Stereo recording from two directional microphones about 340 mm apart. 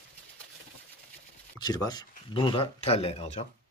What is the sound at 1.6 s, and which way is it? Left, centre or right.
Speech, centre.